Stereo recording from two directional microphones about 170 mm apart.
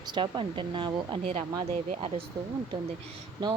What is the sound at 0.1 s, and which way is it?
Speech, 30° right (ahead or behind).